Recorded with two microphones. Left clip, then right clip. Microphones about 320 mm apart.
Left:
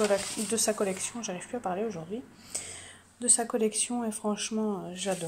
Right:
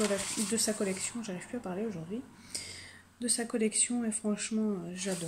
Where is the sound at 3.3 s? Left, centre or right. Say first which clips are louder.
Left 4 dB; left.